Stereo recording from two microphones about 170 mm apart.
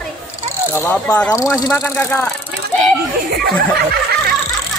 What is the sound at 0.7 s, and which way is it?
Speech, 10° left (ahead or behind).